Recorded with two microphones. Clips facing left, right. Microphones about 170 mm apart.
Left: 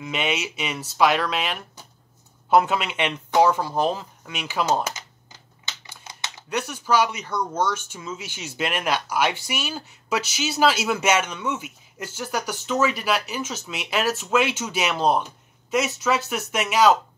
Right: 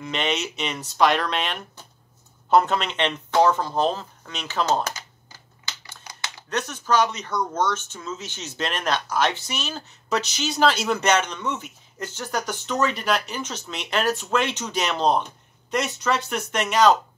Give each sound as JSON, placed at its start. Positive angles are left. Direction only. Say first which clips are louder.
{"t": 0.0, "sound": "speech", "louder": "even", "side_deg": 5}
{"t": 4.9, "sound": "typing", "louder": "even", "side_deg": 20}
{"t": 6.5, "sound": "speech", "louder": "even", "side_deg": 10}